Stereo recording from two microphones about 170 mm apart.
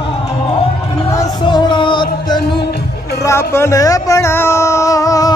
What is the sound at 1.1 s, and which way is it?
Music, 25° left (ahead or behind).